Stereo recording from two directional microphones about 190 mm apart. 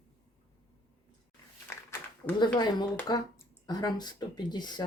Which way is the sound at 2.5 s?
20° left (ahead or behind).